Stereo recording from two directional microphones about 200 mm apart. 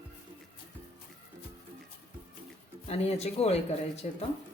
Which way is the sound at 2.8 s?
30° left (ahead or behind).